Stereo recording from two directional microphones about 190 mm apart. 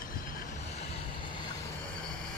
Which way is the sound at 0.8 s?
25° left (ahead or behind).